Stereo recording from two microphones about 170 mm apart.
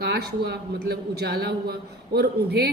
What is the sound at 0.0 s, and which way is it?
A woman's voice, 70° right (ahead or behind).